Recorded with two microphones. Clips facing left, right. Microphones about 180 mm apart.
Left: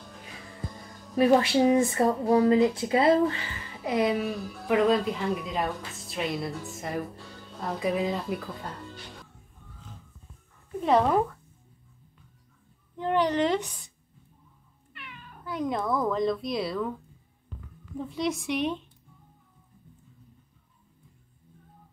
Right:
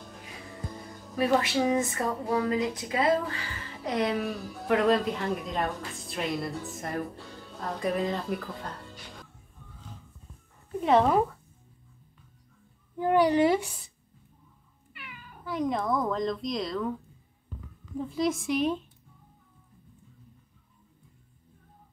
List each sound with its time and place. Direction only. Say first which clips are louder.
1.1 s speech: left 4 dB; 30° left (ahead or behind)
3.8 s speech: left 3 dB; centre (ahead or behind)
10.8 s speech: even; centre (ahead or behind)
12.9 s a woman's voice: right 3 dB; 10° right (ahead or behind); by 16.8 s 5° left (ahead or behind)
17.9 s speech: right 2 dB; centre (ahead or behind)